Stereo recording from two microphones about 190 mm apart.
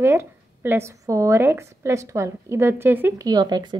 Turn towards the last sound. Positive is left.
turn(degrees=-20)  # may be behind; listen again after turning